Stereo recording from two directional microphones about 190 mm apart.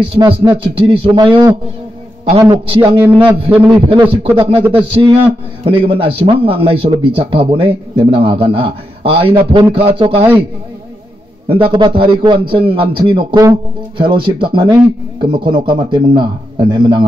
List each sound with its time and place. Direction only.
0.0 s a man's voice: 20° right (ahead or behind)
2.5 s a man's voice: 30° right (ahead or behind)
3.0 s a man's voice: 10° right (ahead or behind)
4.1 s a man's voice: 30° right (ahead or behind)
5.7 s a man's voice: 30° right (ahead or behind)
11.4 s a man's voice: 30° right (ahead or behind)